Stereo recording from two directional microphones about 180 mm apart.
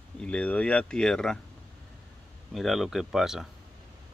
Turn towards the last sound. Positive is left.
turn(degrees=0)  # may be behind; listen again after turning